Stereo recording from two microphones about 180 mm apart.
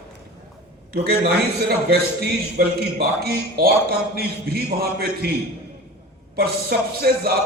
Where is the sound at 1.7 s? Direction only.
60° right (ahead or behind).